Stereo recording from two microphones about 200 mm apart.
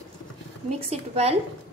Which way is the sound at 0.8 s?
30° right (ahead or behind).